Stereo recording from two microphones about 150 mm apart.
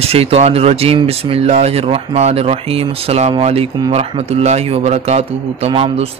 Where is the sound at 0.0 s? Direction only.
40° right (ahead or behind).